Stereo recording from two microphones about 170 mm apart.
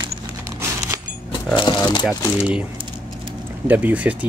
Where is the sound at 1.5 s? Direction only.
25° left (ahead or behind).